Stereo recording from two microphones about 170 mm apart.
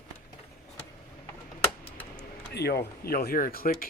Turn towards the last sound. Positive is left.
turn(degrees=60)  # may be behind; listen again after turning